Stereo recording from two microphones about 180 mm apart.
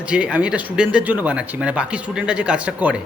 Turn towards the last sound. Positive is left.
turn(degrees=-5)  # may be behind; listen again after turning